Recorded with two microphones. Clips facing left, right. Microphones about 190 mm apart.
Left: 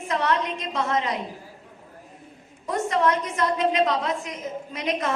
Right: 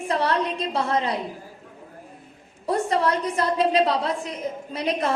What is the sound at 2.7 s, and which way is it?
A woman's voice, 35° right (ahead or behind).